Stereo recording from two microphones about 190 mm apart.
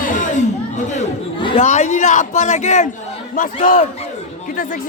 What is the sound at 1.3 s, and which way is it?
Chatter, 25° left (ahead or behind).